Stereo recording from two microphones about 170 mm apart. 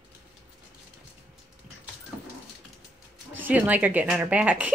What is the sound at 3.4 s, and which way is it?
A woman's voice, 10° right (ahead or behind).